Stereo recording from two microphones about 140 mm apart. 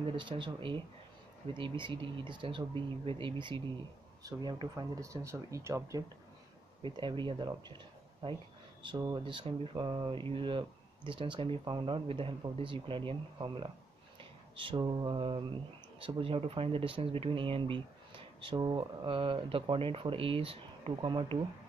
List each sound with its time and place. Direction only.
0.1 s speech: 35° right (ahead or behind); by 6.0 s 20° right (ahead or behind)
6.8 s speech: 35° right (ahead or behind)